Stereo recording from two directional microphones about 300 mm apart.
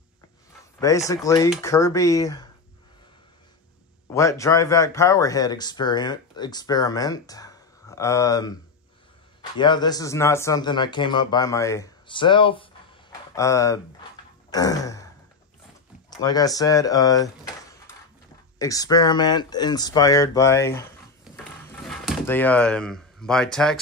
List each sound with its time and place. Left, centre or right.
0.7 s speech: centre
4.1 s speech: centre
9.6 s speech: centre
14.5 s sigh: centre
16.2 s speech: centre
21.8 s speech: centre